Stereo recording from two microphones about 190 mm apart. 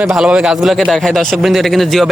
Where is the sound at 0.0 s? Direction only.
5° right (ahead or behind).